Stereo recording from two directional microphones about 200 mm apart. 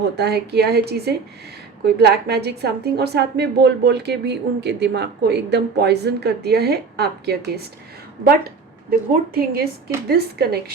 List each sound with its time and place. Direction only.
0.0 s a woman's voice: 55° right (ahead or behind)
9.3 s a woman's voice: 50° right (ahead or behind)